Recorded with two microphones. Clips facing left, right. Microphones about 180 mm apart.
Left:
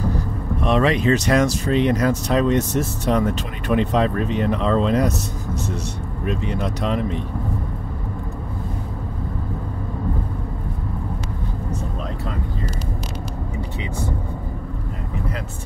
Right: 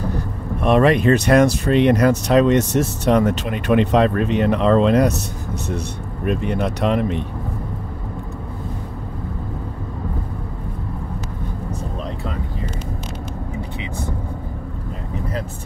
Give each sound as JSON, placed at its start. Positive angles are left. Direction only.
{"t": 0.6, "sound": "speech", "side_deg": -55}
{"t": 6.2, "sound": "speech", "side_deg": -55}